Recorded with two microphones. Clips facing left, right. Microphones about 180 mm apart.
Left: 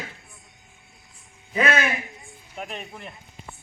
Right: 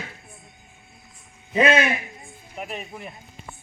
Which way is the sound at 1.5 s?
25° right (ahead or behind).